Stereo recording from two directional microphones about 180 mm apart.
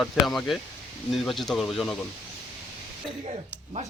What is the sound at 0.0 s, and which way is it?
Speech, centre (ahead or behind).